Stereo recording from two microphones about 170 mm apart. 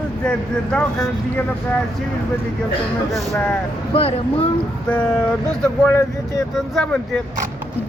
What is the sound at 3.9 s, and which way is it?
Speech, 35° left (ahead or behind).